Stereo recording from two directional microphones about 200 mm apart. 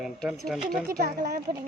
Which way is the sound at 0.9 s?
50° right (ahead or behind).